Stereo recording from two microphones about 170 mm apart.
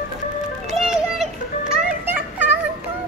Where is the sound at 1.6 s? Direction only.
55° right (ahead or behind).